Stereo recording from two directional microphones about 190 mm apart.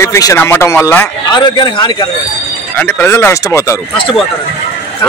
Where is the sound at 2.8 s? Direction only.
10° left (ahead or behind).